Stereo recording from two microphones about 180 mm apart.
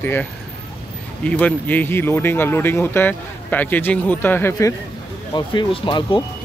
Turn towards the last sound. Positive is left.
turn(degrees=30)  # may be behind; listen again after turning